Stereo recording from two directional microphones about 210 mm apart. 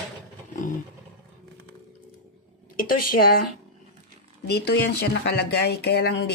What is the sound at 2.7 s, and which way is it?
Speech, 45° left (ahead or behind).